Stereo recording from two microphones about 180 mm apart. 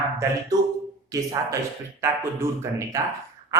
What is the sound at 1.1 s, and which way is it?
Speech, 20° right (ahead or behind).